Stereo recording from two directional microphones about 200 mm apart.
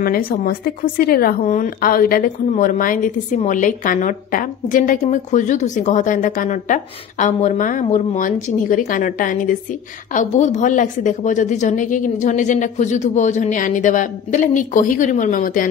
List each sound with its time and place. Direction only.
0.0 s a woman's voice: 45° left (ahead or behind)